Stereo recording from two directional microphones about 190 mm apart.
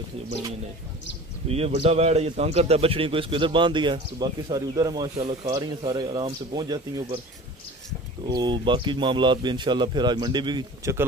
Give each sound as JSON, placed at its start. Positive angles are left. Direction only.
{"t": 1.9, "sound": "a man's voice", "side_deg": -35}
{"t": 8.3, "sound": "a man's voice", "side_deg": -25}